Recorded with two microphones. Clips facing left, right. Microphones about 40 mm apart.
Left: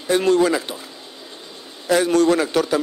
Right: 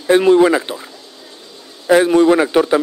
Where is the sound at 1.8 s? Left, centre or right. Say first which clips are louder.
Right 5 dB; right.